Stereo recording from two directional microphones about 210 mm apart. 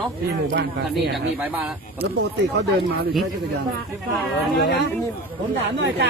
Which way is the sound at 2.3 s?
55° right (ahead or behind).